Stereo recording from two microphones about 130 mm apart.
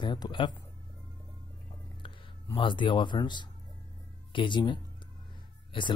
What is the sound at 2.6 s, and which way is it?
Speech, 40° left (ahead or behind).